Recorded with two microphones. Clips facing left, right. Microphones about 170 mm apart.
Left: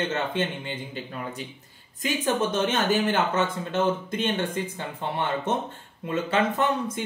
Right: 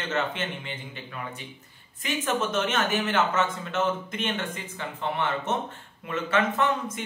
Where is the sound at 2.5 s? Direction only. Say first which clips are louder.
Left 3 dB; 30° left (ahead or behind).